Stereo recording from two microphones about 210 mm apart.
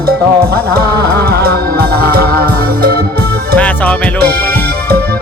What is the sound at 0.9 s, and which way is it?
Music, 50° right (ahead or behind).